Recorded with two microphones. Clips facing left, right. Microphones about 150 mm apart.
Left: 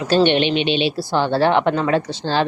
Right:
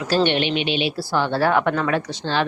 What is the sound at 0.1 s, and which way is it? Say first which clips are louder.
A woman's voice: left 4 dB; 20° left (ahead or behind).